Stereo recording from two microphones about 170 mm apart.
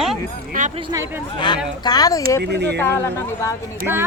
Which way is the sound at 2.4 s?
80° right.